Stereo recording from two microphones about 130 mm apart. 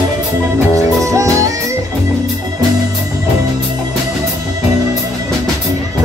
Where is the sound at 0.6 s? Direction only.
25° right (ahead or behind).